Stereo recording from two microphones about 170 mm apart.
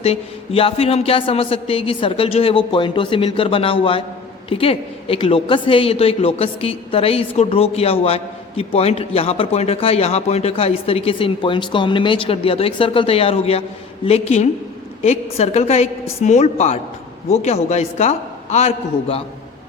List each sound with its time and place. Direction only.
0.0 s a woman's voice: 35° left (ahead or behind)